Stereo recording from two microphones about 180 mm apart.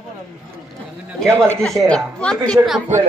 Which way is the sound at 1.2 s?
15° right (ahead or behind).